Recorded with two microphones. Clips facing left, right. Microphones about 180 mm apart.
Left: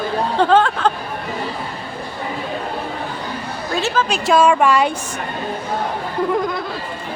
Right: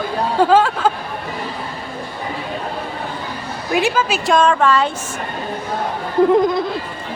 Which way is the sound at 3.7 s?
10° right (ahead or behind).